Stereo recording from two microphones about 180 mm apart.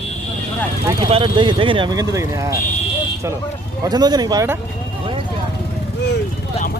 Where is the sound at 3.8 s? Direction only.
20° right (ahead or behind).